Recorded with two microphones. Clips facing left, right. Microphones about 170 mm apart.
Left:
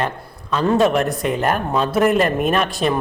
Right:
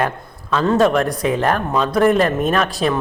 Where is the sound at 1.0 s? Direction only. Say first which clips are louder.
Right 2 dB; centre (ahead or behind).